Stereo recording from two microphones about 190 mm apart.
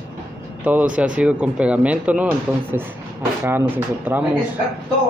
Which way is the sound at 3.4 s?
10° right (ahead or behind).